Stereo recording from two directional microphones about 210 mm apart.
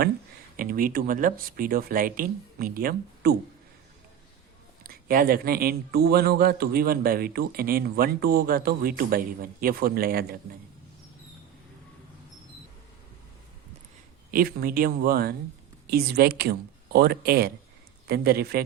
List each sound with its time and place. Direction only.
0.5 s speech: 40° right (ahead or behind)
4.8 s speech: 45° right (ahead or behind)
14.3 s speech: 45° right (ahead or behind)